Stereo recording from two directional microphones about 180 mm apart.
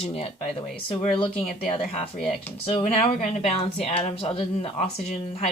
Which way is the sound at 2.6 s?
30° left (ahead or behind).